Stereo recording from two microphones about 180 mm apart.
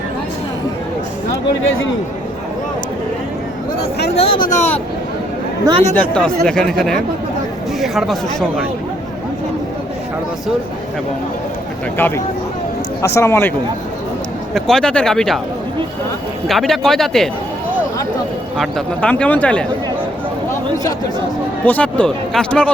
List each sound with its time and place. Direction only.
1.6 s a man's voice: 90° left
4.1 s speech: 30° left (ahead or behind)
5.9 s speech: 5° left (ahead or behind)
11.9 s speech: 10° left (ahead or behind)
14.5 s speech: 5° left (ahead or behind)
16.5 s speech: centre (ahead or behind)
18.5 s speech: 5° left (ahead or behind)
21.6 s speech: 10° left (ahead or behind)